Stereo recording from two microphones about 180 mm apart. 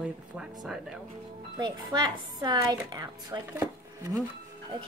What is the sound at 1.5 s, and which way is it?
A woman's voice, 20° right (ahead or behind).